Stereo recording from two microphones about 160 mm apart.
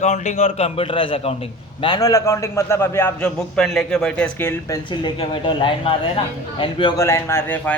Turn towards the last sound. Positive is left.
turn(degrees=15)  # may be behind; listen again after turning